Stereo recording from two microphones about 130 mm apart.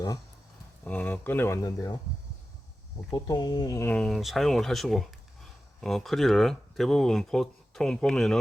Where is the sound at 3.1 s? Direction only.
30° left (ahead or behind).